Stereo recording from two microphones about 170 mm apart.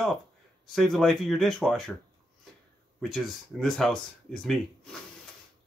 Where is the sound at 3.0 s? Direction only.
Centre (ahead or behind).